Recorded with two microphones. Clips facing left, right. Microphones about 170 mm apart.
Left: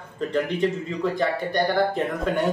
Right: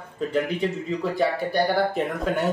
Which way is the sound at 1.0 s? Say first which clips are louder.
Even; 5° right (ahead or behind).